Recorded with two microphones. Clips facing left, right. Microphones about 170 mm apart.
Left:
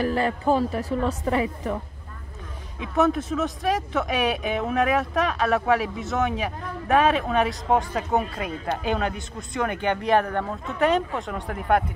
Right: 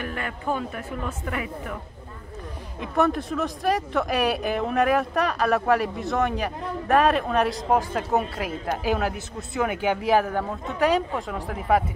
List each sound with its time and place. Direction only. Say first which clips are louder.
0.0 s a woman's voice: left 7 dB; 30° left (ahead or behind)
2.8 s speech: left 1 dB; centre (ahead or behind)